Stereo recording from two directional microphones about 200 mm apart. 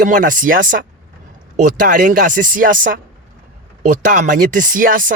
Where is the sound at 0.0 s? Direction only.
40° right (ahead or behind).